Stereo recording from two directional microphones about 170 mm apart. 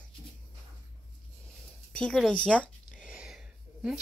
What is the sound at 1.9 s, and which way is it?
Speech, 5° left (ahead or behind).